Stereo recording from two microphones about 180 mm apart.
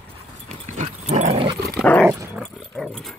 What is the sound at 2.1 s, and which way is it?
Dog, 15° right (ahead or behind).